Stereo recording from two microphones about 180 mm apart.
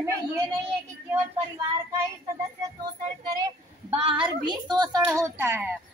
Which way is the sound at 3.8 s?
30° right (ahead or behind).